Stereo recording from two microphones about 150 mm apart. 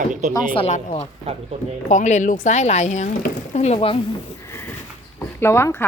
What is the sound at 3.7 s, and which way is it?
Speech, 35° left (ahead or behind).